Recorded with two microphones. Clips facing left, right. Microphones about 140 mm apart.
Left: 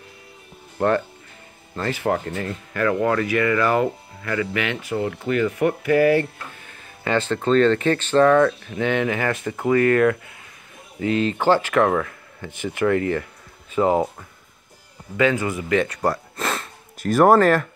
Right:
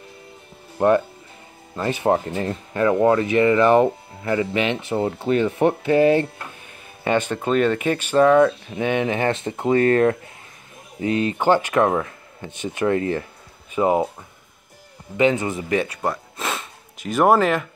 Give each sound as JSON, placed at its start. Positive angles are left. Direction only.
{"t": 0.7, "sound": "speech", "side_deg": -15}
{"t": 15.1, "sound": "speech", "side_deg": -20}
{"t": 16.0, "sound": "a sound", "side_deg": 0}
{"t": 17.1, "sound": "speech", "side_deg": -5}